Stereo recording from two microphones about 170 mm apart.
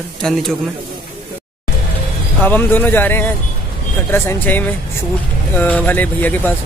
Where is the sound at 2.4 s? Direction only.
10° left (ahead or behind).